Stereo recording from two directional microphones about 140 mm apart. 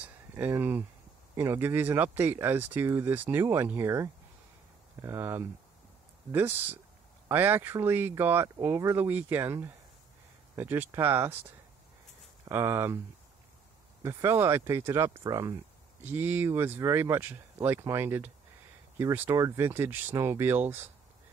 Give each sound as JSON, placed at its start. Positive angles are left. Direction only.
{"t": 0.0, "sound": "a sound", "side_deg": -15}
{"t": 1.3, "sound": "speech", "side_deg": -15}
{"t": 12.4, "sound": "speech", "side_deg": -20}
{"t": 14.0, "sound": "speech", "side_deg": -20}
{"t": 16.0, "sound": "speech", "side_deg": -15}